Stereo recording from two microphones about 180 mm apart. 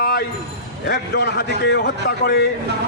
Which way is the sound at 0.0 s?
60° left (ahead or behind).